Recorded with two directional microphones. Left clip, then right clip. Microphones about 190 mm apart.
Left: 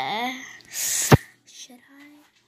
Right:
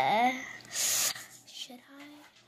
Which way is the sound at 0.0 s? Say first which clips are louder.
Right 1 dB; centre (ahead or behind).